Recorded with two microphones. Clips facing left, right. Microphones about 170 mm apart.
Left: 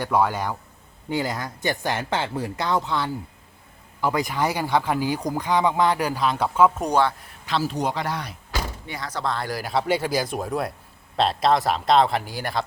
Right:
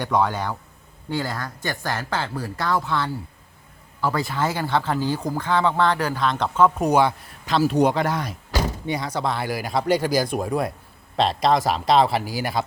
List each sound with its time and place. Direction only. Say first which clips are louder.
0.0 s speech: even; 10° left (ahead or behind)
7.6 s speech: right 9 dB; 65° right (ahead or behind); by 8.6 s 45° right (ahead or behind)
8.9 s speech: right 2 dB; 15° right (ahead or behind)